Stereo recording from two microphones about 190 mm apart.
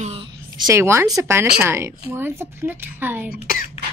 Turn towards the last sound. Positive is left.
turn(degrees=50)  # may be behind; listen again after turning